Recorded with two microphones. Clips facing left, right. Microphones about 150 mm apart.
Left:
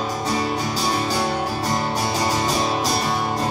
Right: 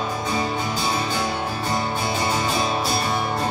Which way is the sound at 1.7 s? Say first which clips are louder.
Right 1 dB; 40° left (ahead or behind).